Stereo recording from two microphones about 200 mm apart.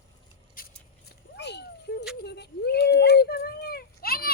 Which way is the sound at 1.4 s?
55° left (ahead or behind).